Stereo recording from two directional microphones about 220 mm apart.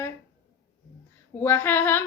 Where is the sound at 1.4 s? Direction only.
10° left (ahead or behind).